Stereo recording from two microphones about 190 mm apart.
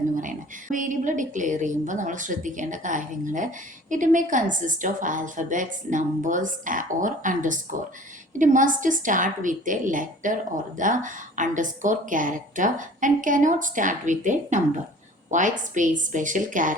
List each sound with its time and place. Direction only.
0.2 s a woman's voice: 45° right (ahead or behind)